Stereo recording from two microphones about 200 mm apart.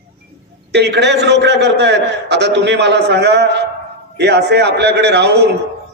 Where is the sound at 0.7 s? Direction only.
55° right (ahead or behind).